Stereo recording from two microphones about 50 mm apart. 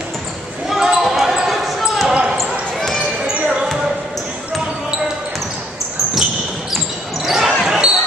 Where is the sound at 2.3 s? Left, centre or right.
Centre.